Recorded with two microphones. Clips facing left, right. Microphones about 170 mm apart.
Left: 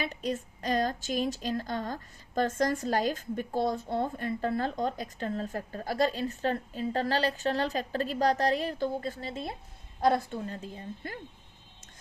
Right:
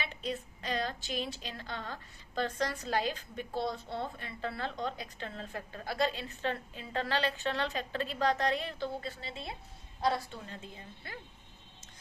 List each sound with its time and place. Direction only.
0.0 s a woman's voice: 45° left (ahead or behind)